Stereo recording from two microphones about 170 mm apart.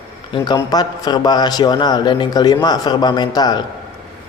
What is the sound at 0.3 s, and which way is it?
Speech, 25° left (ahead or behind).